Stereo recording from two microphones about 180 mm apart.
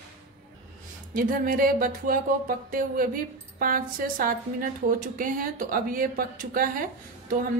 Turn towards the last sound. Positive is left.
turn(degrees=-50)  # may be behind; listen again after turning